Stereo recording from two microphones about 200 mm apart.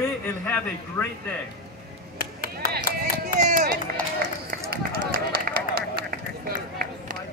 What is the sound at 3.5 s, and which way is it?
Run, 45° right (ahead or behind).